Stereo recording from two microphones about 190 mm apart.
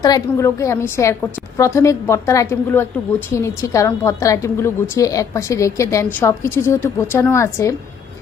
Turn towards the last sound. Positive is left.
turn(degrees=15)  # may be behind; listen again after turning